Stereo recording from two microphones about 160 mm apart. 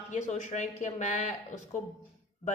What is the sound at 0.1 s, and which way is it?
Speech, 45° left (ahead or behind).